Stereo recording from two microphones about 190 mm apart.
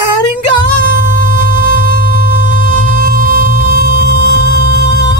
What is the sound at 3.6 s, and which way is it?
Music, 65° left (ahead or behind).